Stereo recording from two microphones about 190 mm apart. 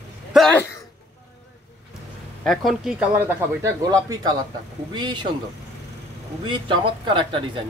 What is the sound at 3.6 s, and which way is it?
Speech, 20° right (ahead or behind).